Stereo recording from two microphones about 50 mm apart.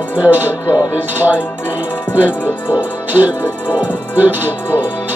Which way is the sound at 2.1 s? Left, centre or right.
Right.